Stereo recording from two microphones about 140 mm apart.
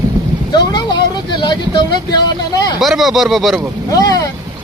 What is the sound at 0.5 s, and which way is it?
Speech, 30° left (ahead or behind).